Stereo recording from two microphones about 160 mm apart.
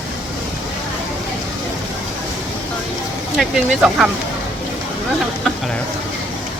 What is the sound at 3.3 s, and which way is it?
Speech, 5° right (ahead or behind).